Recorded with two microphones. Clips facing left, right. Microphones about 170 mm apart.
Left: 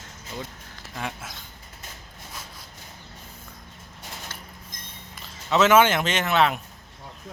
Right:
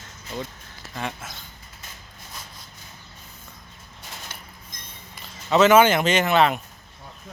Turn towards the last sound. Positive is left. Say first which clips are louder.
# right 3 dB
turn(degrees=0)  # may be behind; listen again after turning